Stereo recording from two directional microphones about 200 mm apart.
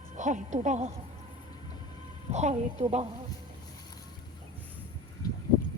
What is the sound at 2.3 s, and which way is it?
Speech, 35° right (ahead or behind).